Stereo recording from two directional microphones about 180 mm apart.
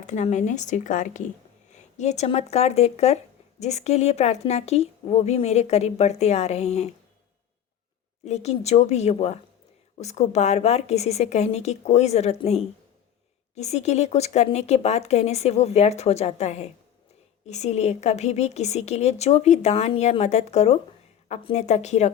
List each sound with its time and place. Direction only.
0.0 s a woman's voice: 40° left (ahead or behind)
8.2 s a woman's voice: 40° left (ahead or behind)